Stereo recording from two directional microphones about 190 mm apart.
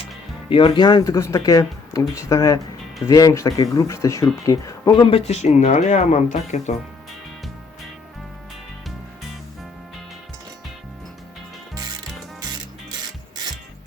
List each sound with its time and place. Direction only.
0.5 s speech: 25° left (ahead or behind)
5.0 s speech: 30° left (ahead or behind)